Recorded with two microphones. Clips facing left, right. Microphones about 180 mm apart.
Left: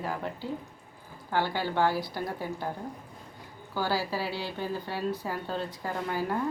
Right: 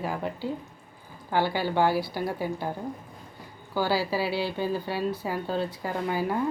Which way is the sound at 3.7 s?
10° right (ahead or behind).